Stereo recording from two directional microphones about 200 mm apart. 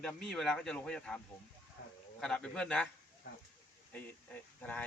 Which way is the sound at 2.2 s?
5° left (ahead or behind).